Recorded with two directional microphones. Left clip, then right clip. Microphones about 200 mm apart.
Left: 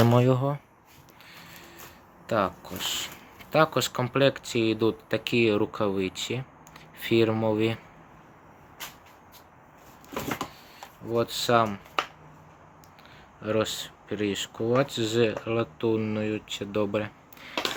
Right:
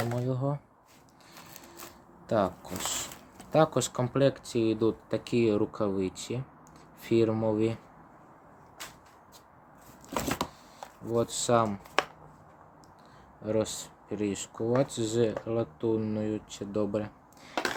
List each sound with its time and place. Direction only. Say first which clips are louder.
0.1 s speech: left 11 dB; 20° left (ahead or behind)
2.2 s speech: left 2 dB; 15° right (ahead or behind)
10.2 s power windows: even; 55° right (ahead or behind)
11.1 s speech: left 3 dB; 10° right (ahead or behind)
13.4 s speech: left 3 dB; 5° right (ahead or behind)